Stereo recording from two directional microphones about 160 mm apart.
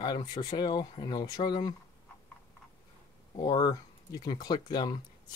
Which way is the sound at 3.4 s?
25° left (ahead or behind).